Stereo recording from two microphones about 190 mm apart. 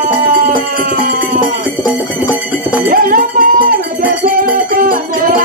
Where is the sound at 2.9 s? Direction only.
45° right (ahead or behind).